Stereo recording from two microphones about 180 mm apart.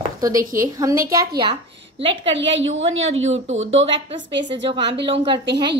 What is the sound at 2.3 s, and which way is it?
Speech, 90° right.